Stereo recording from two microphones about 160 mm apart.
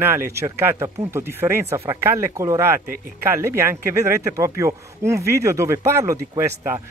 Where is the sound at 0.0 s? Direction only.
15° right (ahead or behind).